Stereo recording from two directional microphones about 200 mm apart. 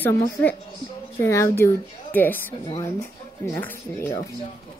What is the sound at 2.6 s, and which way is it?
Speech, 20° left (ahead or behind).